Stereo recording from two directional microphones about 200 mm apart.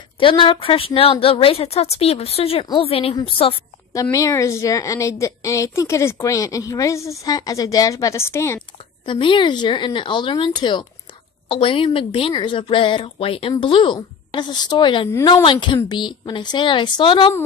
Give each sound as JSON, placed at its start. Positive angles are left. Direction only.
{"t": 0.2, "sound": "a woman's voice", "side_deg": 25}
{"t": 3.9, "sound": "a woman's voice", "side_deg": 15}
{"t": 9.0, "sound": "a woman's voice", "side_deg": 25}